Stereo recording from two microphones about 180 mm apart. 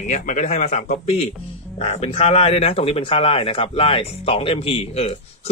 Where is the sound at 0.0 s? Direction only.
40° left (ahead or behind).